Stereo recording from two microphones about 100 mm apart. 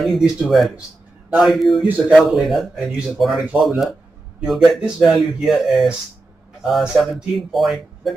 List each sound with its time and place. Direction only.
0.0 s speech: centre (ahead or behind)